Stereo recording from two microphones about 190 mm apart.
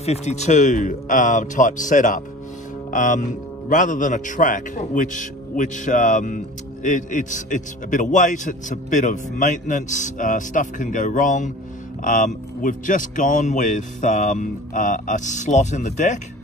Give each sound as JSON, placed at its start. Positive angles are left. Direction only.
{"t": 0.0, "sound": "a man's voice", "side_deg": 35}